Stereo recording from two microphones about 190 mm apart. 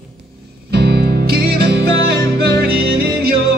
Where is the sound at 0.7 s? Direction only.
55° right (ahead or behind).